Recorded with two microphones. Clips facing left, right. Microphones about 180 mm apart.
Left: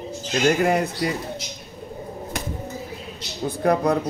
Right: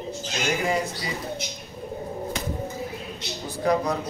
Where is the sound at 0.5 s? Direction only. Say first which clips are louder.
Left 5 dB; 60° left (ahead or behind).